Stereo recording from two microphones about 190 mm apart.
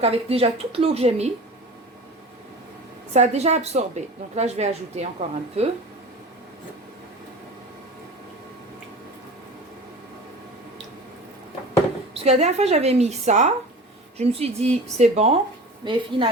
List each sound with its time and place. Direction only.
0.0 s a woman's voice: 30° right (ahead or behind)
3.1 s a woman's voice: 35° right (ahead or behind)
12.2 s a woman's voice: 35° right (ahead or behind)